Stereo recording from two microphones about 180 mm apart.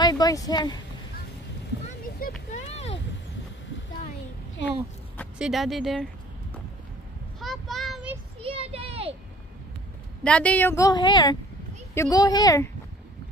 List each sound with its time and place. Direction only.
0.0 s speech: 20° left (ahead or behind)
2.2 s speech: 55° left (ahead or behind)
2.5 s a sound: 35° left (ahead or behind)
5.4 s speech: centre (ahead or behind)
7.3 s child singing: centre (ahead or behind)
8.4 s a sound: 30° right (ahead or behind)
10.2 s a woman's voice: 5° left (ahead or behind)